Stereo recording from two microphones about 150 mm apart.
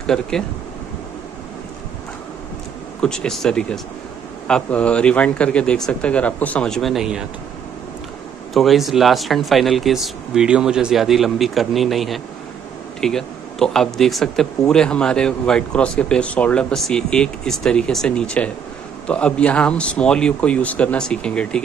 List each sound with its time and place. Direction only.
0.0 s speech: 5° left (ahead or behind)
3.0 s speech: 5° left (ahead or behind)
8.5 s speech: centre (ahead or behind)